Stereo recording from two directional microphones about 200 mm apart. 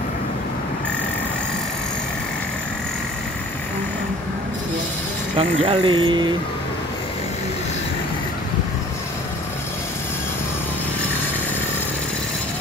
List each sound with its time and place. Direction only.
5.4 s speech: 30° right (ahead or behind)